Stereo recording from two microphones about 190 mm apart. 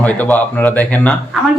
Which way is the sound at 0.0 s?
10° left (ahead or behind).